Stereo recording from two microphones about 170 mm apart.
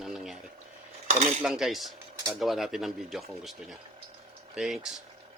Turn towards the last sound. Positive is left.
turn(degrees=0)  # may be behind; listen again after turning